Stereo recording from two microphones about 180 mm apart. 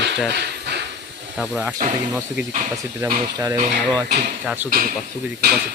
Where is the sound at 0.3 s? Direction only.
70° right (ahead or behind).